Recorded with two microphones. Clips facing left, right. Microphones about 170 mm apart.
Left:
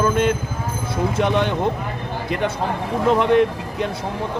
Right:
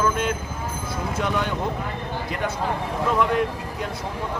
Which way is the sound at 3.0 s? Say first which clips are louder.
Left 6 dB; 25° left (ahead or behind).